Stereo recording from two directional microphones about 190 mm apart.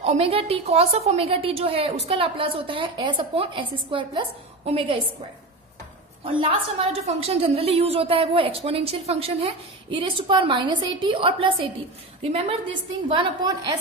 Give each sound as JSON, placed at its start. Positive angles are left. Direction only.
{"t": 0.0, "sound": "a woman's voice", "side_deg": -30}
{"t": 6.2, "sound": "a woman's voice", "side_deg": -30}